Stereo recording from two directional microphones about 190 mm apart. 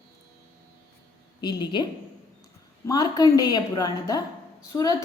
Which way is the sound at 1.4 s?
25° left (ahead or behind).